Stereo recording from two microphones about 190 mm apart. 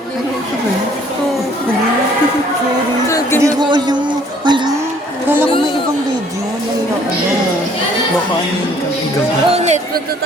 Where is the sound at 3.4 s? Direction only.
20° right (ahead or behind).